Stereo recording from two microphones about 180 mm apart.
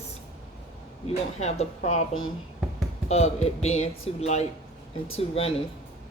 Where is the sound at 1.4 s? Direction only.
40° left (ahead or behind).